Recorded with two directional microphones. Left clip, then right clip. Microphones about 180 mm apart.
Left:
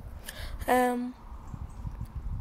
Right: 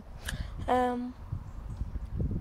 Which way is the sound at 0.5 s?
15° left (ahead or behind).